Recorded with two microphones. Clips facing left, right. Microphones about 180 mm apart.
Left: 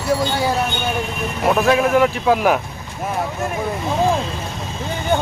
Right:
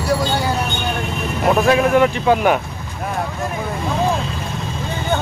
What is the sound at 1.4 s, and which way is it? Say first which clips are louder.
Speech: right 1 dB; centre (ahead or behind).